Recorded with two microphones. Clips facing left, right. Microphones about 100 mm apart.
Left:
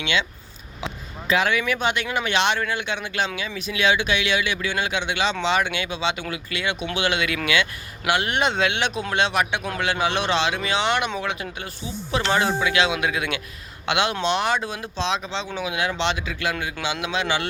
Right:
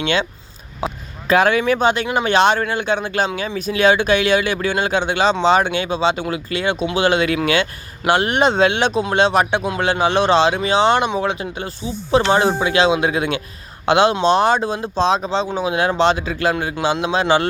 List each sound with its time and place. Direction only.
0.0 s speech: 40° right (ahead or behind)
0.8 s a sound: 40° right (ahead or behind)
1.3 s speech: 45° right (ahead or behind)